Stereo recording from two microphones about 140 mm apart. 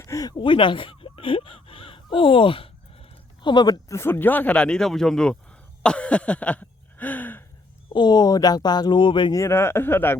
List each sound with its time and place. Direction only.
0.0 s speech: 25° left (ahead or behind); by 5.4 s 5° left (ahead or behind)
5.8 s a sound: 10° left (ahead or behind)
7.9 s speech: 30° left (ahead or behind)
9.4 s speech: 15° left (ahead or behind)